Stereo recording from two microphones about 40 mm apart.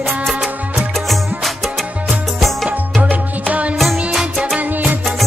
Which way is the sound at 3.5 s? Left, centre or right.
Right.